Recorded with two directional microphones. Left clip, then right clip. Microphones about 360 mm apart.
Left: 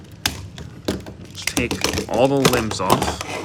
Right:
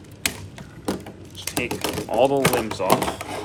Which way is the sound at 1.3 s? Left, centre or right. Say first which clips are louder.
Left 4 dB; centre.